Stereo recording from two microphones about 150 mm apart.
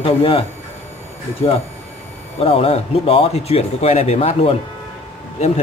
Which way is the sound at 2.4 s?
40° left (ahead or behind).